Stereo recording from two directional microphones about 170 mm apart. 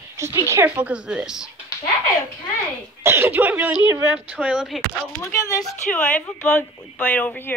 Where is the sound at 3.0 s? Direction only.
15° right (ahead or behind).